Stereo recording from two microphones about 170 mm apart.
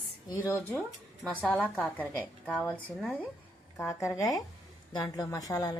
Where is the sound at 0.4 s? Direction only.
15° left (ahead or behind).